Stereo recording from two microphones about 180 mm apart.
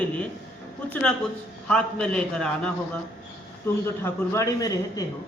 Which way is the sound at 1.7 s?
5° left (ahead or behind).